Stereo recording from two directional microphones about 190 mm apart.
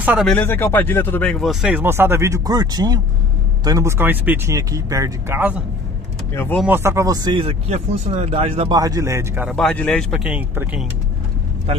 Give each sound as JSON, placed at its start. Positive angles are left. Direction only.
{"t": 0.0, "sound": "speech", "side_deg": -10}
{"t": 0.3, "sound": "speech", "side_deg": 10}
{"t": 6.3, "sound": "speech", "side_deg": 10}
{"t": 6.6, "sound": "speech", "side_deg": -10}
{"t": 8.7, "sound": "speech", "side_deg": -20}
{"t": 9.6, "sound": "speech", "side_deg": 5}